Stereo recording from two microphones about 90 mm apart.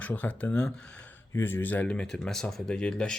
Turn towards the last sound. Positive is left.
turn(degrees=10)  # may be behind; listen again after turning